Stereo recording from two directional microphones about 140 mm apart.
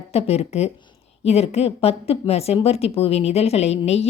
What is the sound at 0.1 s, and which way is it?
Speech, 45° left (ahead or behind).